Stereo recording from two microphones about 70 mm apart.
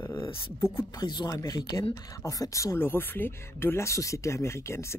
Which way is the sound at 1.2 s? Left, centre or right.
Left.